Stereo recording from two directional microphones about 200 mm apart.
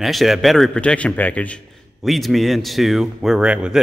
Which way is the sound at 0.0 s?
Centre (ahead or behind).